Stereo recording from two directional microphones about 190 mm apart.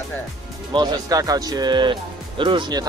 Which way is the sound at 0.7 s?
20° right (ahead or behind).